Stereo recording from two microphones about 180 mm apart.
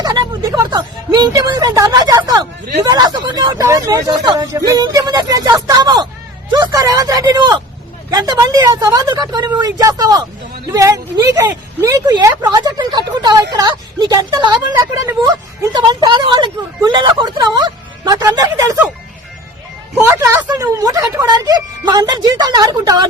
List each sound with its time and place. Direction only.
0.0 s a sound: 25° right (ahead or behind)
2.8 s speech: 20° right (ahead or behind)
20.1 s speech: 15° right (ahead or behind)